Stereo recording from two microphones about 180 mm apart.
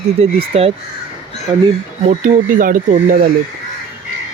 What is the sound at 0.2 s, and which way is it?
Speech, 35° right (ahead or behind).